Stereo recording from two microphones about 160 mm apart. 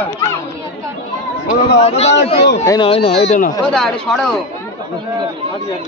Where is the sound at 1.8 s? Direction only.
40° left (ahead or behind).